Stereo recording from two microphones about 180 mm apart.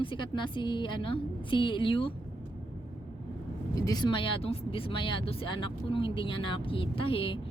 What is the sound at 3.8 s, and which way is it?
Speech, 20° left (ahead or behind).